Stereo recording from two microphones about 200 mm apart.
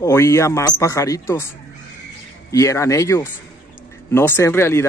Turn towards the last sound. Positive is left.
turn(degrees=15)  # may be behind; listen again after turning